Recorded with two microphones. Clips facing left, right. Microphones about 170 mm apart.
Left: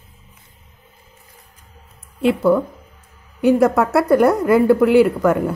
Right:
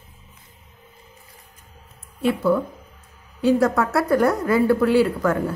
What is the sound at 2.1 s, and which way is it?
A woman's voice, 25° left (ahead or behind).